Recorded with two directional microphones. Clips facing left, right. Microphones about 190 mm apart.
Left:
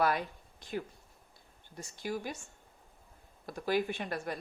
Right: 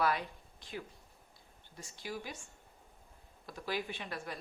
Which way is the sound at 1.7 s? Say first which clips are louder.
Left 6 dB; 45° left (ahead or behind).